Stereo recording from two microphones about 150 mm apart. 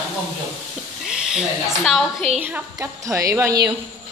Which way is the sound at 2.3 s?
10° right (ahead or behind).